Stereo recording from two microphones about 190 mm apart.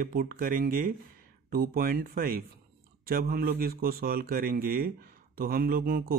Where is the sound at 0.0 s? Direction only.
50° right (ahead or behind).